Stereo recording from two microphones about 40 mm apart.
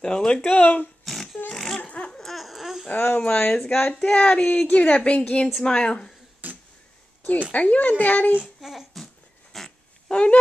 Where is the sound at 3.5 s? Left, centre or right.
Centre.